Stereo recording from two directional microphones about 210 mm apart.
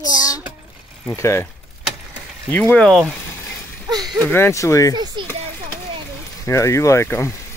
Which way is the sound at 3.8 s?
20° right (ahead or behind).